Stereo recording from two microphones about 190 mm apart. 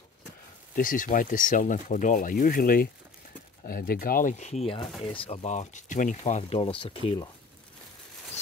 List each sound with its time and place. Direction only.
0.7 s speech: 45° left (ahead or behind); by 7.2 s 30° left (ahead or behind)